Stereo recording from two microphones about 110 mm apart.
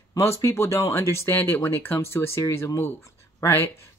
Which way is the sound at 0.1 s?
25° left (ahead or behind).